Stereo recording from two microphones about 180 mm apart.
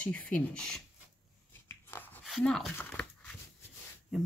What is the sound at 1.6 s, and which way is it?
Dog, 10° left (ahead or behind).